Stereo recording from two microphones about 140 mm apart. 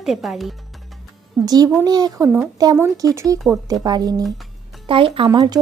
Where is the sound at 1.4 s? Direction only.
25° right (ahead or behind).